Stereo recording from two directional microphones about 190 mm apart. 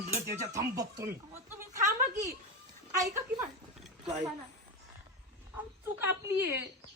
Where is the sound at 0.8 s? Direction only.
15° right (ahead or behind).